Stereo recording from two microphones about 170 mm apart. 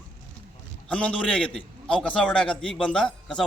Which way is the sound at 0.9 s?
5° left (ahead or behind).